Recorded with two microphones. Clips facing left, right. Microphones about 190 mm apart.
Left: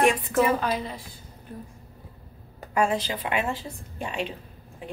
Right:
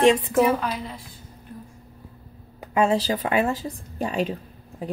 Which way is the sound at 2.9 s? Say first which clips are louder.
Right 5 dB; 40° right (ahead or behind).